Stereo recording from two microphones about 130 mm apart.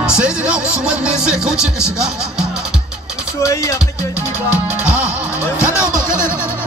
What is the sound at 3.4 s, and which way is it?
Speech, 25° left (ahead or behind).